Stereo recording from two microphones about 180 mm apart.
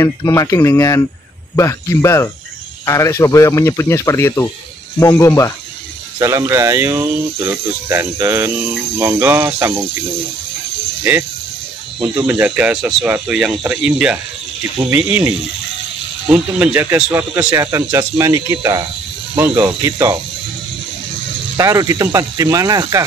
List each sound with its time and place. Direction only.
0.0 s speech: 15° left (ahead or behind)
6.1 s speech: 15° right (ahead or behind)
12.0 s speech: 15° right (ahead or behind)
21.5 s speech: 20° right (ahead or behind)